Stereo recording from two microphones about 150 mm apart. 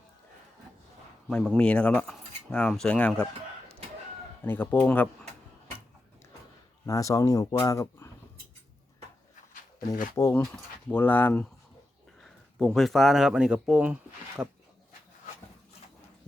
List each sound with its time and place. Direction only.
1.3 s speech: 5° left (ahead or behind)
4.4 s speech: 15° left (ahead or behind)
6.8 s speech: 20° left (ahead or behind)
9.5 s a sound: 60° left (ahead or behind)
10.2 s speech: 20° left (ahead or behind); by 14.4 s 10° right (ahead or behind)